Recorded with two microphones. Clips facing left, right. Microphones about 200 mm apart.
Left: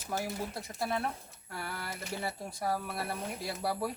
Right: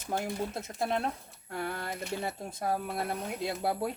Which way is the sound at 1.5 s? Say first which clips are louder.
Right 5 dB; 20° right (ahead or behind).